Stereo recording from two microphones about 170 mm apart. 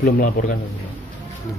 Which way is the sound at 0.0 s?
55° left (ahead or behind).